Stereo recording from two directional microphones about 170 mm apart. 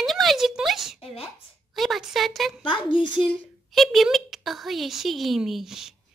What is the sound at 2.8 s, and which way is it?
Speech, 30° left (ahead or behind).